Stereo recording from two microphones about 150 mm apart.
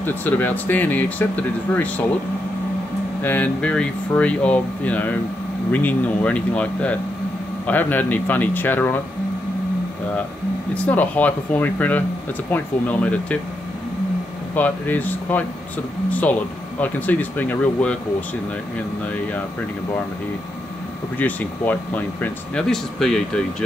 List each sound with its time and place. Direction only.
0.0 s speech: 10° left (ahead or behind)
3.2 s speech: 10° left (ahead or behind)
10.7 s speech: 10° left (ahead or behind)
14.5 s speech: 10° left (ahead or behind)
21.2 s speech: 10° left (ahead or behind)